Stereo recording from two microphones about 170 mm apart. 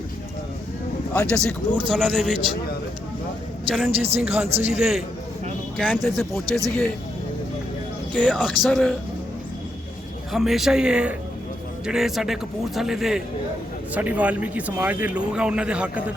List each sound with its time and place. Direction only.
1.1 s a man's voice: 10° left (ahead or behind)
3.9 s a man's voice: 35° right (ahead or behind)
4.2 s speech: 5° right (ahead or behind)
4.4 s a man's voice: 40° right (ahead or behind)
4.7 s a man's voice: 5° right (ahead or behind)
8.1 s a man's voice: 5° left (ahead or behind)
10.3 s a man's voice: centre (ahead or behind)